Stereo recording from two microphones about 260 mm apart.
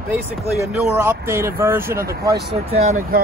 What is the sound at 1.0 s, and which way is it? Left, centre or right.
Speech, centre.